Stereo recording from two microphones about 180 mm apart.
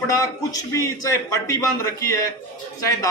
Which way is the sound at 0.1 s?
20° left (ahead or behind).